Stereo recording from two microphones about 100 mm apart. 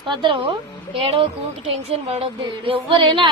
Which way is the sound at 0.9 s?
65° right (ahead or behind).